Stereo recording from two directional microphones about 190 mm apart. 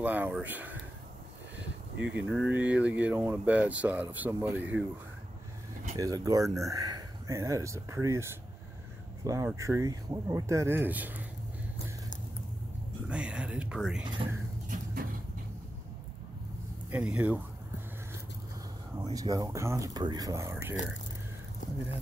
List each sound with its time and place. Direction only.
0.0 s speech: 10° right (ahead or behind)
2.1 s speech: 5° right (ahead or behind)
5.9 s speech: 20° right (ahead or behind)
13.1 s speech: 5° right (ahead or behind)
14.7 s vehicle: 45° right (ahead or behind)
16.9 s speech: 5° right (ahead or behind)
19.0 s speech: 20° right (ahead or behind)